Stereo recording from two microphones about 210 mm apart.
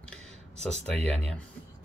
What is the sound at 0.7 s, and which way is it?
Speech, 30° right (ahead or behind).